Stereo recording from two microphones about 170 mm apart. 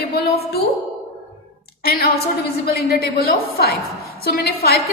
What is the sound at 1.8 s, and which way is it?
A woman's voice, 65° left (ahead or behind).